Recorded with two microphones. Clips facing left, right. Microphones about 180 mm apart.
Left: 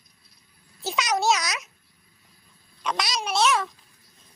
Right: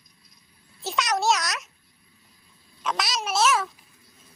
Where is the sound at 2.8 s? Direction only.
Centre (ahead or behind).